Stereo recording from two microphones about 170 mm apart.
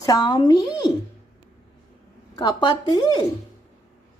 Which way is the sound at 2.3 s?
25° left (ahead or behind).